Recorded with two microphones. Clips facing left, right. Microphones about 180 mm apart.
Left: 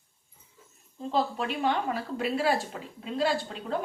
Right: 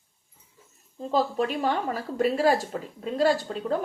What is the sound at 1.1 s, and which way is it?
A woman's voice, 40° right (ahead or behind).